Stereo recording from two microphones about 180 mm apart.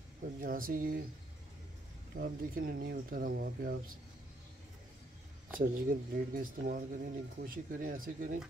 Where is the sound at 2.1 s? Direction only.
55° right (ahead or behind).